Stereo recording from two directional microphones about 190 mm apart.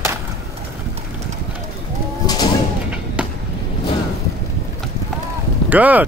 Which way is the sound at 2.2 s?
20° left (ahead or behind).